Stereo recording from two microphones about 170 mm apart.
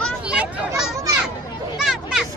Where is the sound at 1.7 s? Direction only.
Centre (ahead or behind).